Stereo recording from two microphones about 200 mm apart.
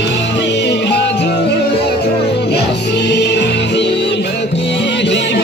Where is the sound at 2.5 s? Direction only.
55° left (ahead or behind).